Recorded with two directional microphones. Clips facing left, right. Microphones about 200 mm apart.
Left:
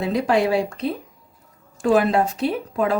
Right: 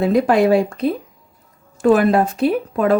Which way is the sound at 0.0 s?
55° right (ahead or behind).